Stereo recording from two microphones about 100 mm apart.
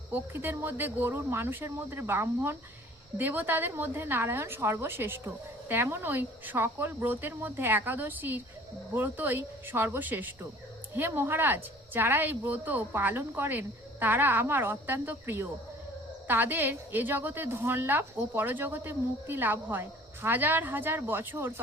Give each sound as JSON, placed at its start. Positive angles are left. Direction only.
{"t": 0.1, "sound": "a woman's voice", "side_deg": -20}